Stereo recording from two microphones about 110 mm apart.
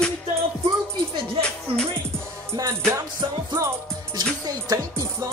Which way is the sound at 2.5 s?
30° right (ahead or behind).